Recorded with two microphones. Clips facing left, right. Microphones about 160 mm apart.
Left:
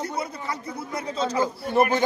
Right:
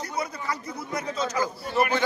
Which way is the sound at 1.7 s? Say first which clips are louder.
Left 4 dB; 50° left (ahead or behind).